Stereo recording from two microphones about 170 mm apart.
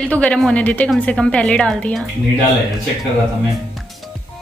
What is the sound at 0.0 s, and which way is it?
A woman's voice, 5° left (ahead or behind).